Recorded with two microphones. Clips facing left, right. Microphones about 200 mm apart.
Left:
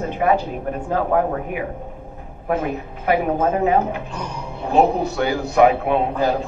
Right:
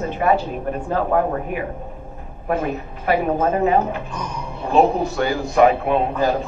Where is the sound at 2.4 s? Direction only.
10° left (ahead or behind).